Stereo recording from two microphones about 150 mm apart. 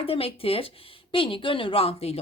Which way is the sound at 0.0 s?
40° left (ahead or behind).